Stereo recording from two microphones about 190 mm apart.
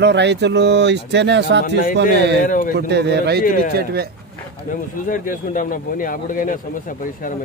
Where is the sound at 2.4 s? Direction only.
45° left (ahead or behind).